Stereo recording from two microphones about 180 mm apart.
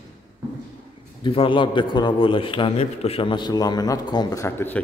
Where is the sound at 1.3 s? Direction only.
30° left (ahead or behind).